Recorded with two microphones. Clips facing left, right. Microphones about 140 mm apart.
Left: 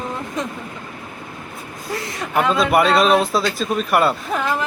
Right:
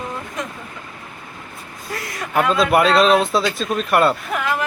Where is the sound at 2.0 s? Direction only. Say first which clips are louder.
Left 2 dB; 25° left (ahead or behind).